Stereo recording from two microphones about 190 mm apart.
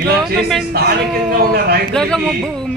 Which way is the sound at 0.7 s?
55° right (ahead or behind).